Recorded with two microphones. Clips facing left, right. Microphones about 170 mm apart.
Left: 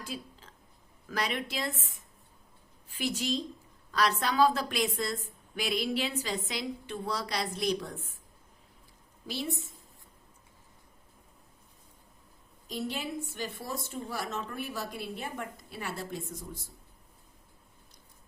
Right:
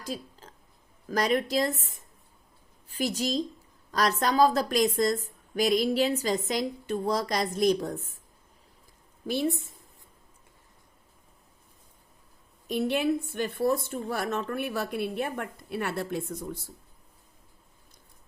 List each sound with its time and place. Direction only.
0.0 s a sound: 40° right (ahead or behind)
1.0 s a woman's voice: 40° right (ahead or behind)
2.9 s a woman's voice: 40° right (ahead or behind)
9.2 s a woman's voice: 50° right (ahead or behind)
12.6 s a woman's voice: 60° right (ahead or behind)